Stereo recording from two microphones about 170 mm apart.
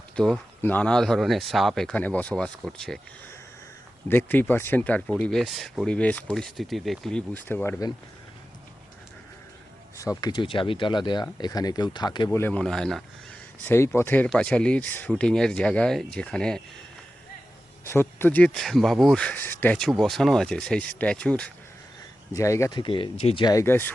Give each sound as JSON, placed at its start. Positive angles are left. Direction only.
{"t": 0.2, "sound": "speech", "side_deg": 5}
{"t": 4.3, "sound": "speech", "side_deg": 10}
{"t": 10.0, "sound": "speech", "side_deg": 20}
{"t": 12.4, "sound": "speech", "side_deg": 10}
{"t": 17.8, "sound": "speech", "side_deg": 15}
{"t": 22.3, "sound": "speech", "side_deg": 20}
{"t": 22.8, "sound": "speech", "side_deg": 30}